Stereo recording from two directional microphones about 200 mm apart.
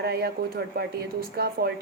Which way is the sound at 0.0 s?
55° right (ahead or behind).